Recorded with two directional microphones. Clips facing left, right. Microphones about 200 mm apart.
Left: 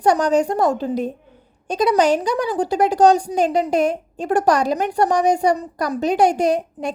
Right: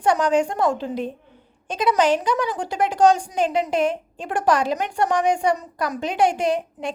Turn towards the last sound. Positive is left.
turn(degrees=40)  # may be behind; listen again after turning